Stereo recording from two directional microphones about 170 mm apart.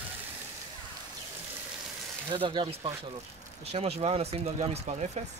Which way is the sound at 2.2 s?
30° right (ahead or behind).